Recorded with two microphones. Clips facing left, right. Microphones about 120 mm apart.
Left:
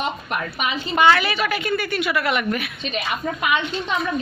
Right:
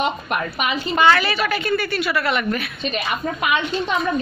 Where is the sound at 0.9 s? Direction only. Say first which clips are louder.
Even; 15° left (ahead or behind).